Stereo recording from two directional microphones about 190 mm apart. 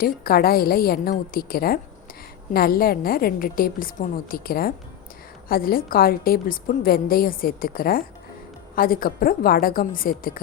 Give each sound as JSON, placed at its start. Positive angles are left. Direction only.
{"t": 0.0, "sound": "a woman's voice", "side_deg": 50}